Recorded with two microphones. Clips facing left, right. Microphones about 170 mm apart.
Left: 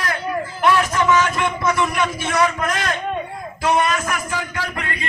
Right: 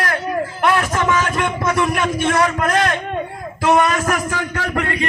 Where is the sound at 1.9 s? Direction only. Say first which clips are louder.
Right 3 dB; 55° right (ahead or behind).